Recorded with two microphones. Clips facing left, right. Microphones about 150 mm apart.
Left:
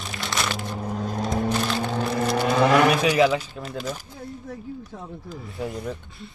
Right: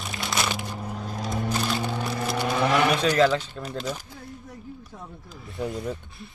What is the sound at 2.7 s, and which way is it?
Speech, centre (ahead or behind).